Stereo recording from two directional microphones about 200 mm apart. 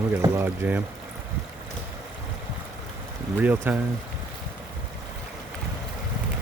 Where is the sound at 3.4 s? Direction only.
10° right (ahead or behind).